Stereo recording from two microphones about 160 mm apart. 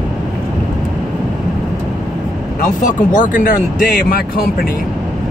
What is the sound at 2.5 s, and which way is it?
Speech, 55° left (ahead or behind).